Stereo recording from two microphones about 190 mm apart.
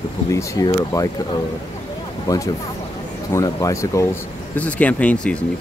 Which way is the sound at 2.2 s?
20° left (ahead or behind).